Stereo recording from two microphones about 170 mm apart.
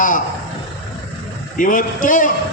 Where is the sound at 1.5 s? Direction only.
50° left (ahead or behind).